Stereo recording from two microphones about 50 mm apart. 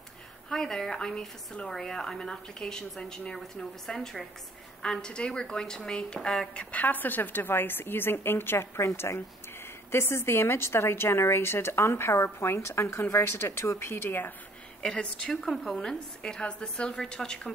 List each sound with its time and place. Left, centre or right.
0.5 s a woman's voice: centre; by 13.0 s left
13.1 s speech: left
14.8 s speech: left
15.5 s a woman's voice: centre